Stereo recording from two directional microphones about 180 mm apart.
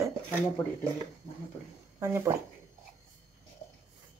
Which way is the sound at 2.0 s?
15° right (ahead or behind).